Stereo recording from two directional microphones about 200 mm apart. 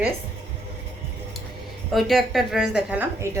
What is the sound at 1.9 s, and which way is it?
A woman's voice, centre (ahead or behind).